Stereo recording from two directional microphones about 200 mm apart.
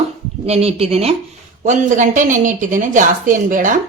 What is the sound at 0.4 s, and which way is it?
A woman's voice, 30° right (ahead or behind).